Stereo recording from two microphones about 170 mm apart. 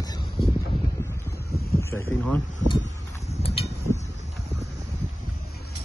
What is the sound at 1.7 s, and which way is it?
Boat, 15° left (ahead or behind).